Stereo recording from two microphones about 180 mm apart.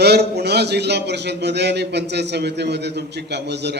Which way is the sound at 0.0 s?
65° right (ahead or behind).